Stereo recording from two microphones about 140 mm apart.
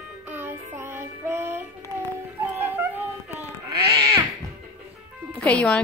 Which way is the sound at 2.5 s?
15° right (ahead or behind).